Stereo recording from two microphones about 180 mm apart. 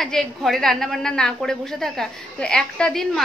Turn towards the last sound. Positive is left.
turn(degrees=0)  # may be behind; listen again after turning